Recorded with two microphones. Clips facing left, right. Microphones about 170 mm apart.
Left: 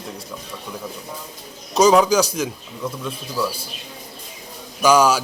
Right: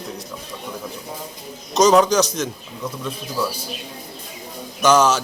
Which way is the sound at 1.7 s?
10° left (ahead or behind).